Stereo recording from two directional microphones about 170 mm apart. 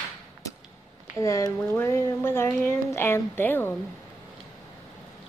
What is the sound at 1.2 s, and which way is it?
Speech, 20° left (ahead or behind).